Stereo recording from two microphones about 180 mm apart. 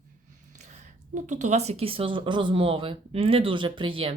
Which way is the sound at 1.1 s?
40° right (ahead or behind).